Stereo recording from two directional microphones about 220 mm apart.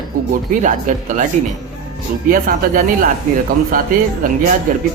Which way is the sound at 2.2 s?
40° right (ahead or behind).